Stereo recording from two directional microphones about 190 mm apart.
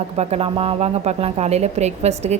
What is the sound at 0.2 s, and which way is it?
A woman's voice, 35° right (ahead or behind).